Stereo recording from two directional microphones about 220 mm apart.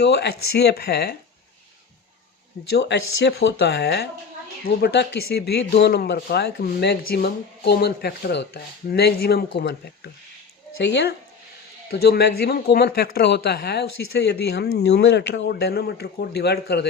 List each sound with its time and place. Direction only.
0.0 s speech: 50° left (ahead or behind)
2.7 s speech: 50° left (ahead or behind)